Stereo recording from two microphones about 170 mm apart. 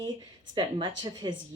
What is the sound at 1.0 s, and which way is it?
Speech, 25° right (ahead or behind).